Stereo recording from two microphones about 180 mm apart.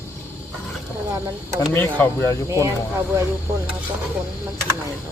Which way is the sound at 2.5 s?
15° right (ahead or behind).